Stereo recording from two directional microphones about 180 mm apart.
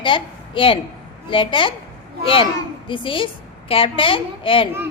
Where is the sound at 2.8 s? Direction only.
30° left (ahead or behind).